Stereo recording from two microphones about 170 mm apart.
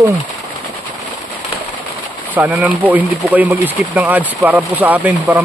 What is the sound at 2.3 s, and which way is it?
Speech, 10° right (ahead or behind).